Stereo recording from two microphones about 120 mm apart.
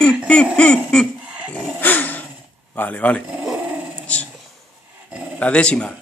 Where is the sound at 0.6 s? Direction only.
10° left (ahead or behind).